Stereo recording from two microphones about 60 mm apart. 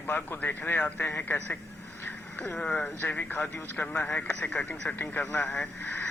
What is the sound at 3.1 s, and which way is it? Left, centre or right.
Speech, left.